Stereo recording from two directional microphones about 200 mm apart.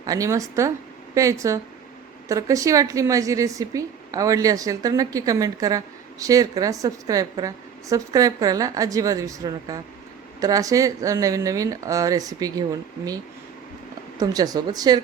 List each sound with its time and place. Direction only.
0.0 s a woman's voice: 15° right (ahead or behind)
14.2 s speech: 20° right (ahead or behind)